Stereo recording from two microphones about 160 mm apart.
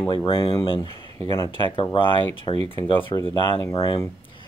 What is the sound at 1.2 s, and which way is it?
Speech, 20° left (ahead or behind).